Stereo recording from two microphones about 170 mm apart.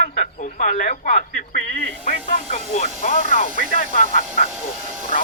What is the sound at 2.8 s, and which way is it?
Speech, 50° left (ahead or behind).